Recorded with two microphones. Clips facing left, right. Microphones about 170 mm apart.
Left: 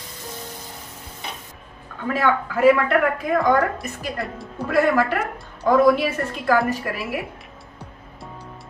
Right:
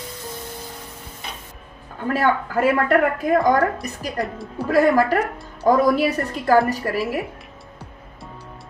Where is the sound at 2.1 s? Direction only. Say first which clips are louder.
Right 1 dB; 45° right (ahead or behind).